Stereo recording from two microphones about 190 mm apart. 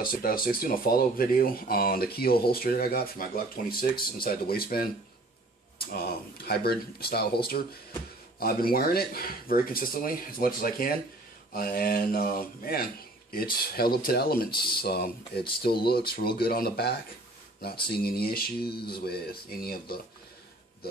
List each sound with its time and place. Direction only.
0.0 s speech: 50° left (ahead or behind)